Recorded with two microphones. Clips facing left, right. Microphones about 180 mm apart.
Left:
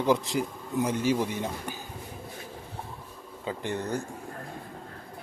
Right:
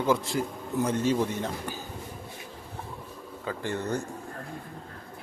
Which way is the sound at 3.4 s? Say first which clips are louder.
Even; 20° left (ahead or behind).